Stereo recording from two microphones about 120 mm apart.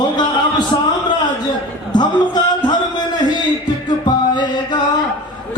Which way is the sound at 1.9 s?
35° left (ahead or behind).